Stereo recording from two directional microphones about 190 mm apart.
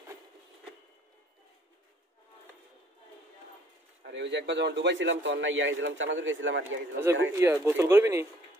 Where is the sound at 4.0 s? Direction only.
65° right (ahead or behind); by 6.8 s 90° right.